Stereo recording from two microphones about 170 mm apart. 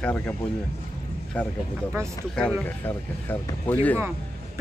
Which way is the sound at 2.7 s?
10° left (ahead or behind).